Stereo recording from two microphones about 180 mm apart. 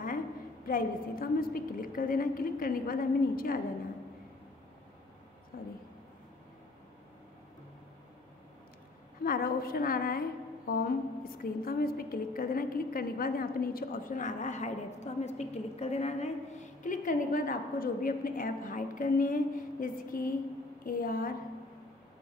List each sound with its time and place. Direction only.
0.7 s a woman's voice: 55° left (ahead or behind)
5.5 s a sound: 55° left (ahead or behind)
9.2 s a woman's voice: 55° left (ahead or behind)